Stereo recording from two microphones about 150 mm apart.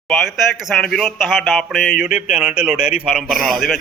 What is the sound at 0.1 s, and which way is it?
Speech, centre (ahead or behind).